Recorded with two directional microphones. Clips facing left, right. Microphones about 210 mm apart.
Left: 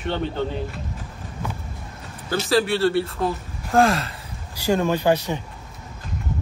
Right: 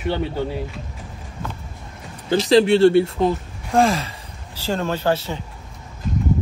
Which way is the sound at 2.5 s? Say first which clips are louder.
Right 7 dB; 25° right (ahead or behind).